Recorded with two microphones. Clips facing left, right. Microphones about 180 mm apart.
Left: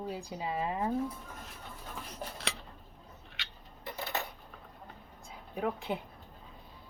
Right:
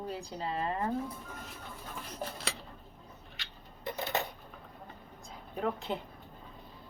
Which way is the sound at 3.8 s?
20° right (ahead or behind).